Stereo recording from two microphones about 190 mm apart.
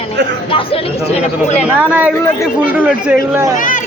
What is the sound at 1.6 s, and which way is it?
Speech, 10° right (ahead or behind).